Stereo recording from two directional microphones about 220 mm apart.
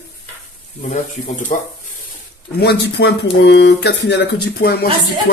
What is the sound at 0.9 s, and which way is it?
Speech, 35° left (ahead or behind).